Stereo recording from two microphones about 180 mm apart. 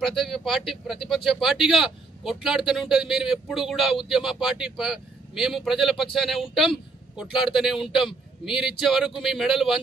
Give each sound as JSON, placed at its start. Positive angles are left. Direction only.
{"t": 0.0, "sound": "speech", "side_deg": 0}